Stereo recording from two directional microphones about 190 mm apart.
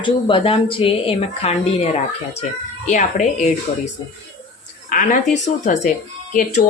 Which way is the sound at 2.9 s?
40° left (ahead or behind).